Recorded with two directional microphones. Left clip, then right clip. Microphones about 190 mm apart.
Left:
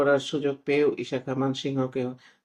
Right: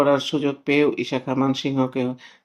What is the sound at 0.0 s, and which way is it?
Speech, 20° right (ahead or behind).